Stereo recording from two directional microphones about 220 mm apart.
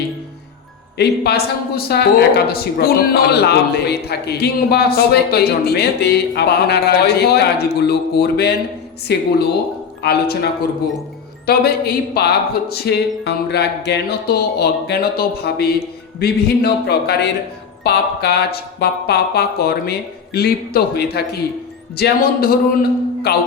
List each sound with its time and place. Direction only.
0.9 s a woman's voice: 50° left (ahead or behind)
11.4 s a woman's voice: 45° left (ahead or behind)